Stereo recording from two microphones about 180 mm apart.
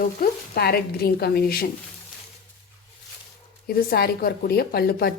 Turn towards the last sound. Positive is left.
turn(degrees=60)  # may be behind; listen again after turning